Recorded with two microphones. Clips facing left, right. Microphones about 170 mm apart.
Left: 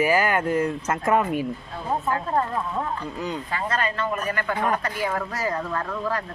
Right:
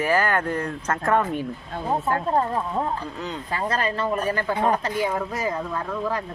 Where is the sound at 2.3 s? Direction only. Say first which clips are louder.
Right 2 dB; 30° right (ahead or behind); by 6.2 s 10° right (ahead or behind).